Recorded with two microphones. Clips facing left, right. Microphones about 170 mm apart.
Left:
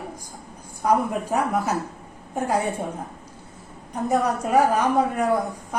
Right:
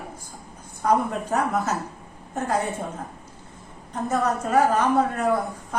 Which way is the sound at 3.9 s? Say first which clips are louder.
Left 2 dB; 10° left (ahead or behind).